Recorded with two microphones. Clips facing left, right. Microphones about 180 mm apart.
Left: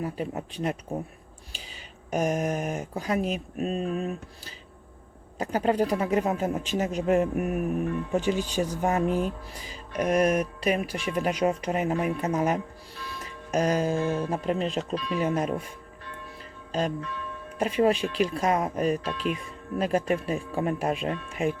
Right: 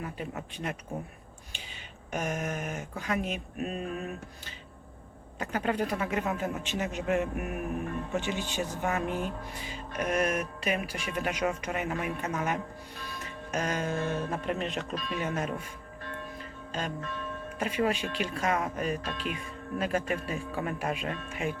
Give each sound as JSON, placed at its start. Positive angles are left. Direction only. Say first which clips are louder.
{"t": 0.0, "sound": "speech", "louder": "left 6 dB", "side_deg": 35}
{"t": 2.0, "sound": "speech", "louder": "left 7 dB", "side_deg": 40}
{"t": 13.2, "sound": "music", "louder": "left 7 dB", "side_deg": 35}
{"t": 14.1, "sound": "speech", "louder": "left 4 dB", "side_deg": 30}
{"t": 17.6, "sound": "speech", "louder": "left 6 dB", "side_deg": 35}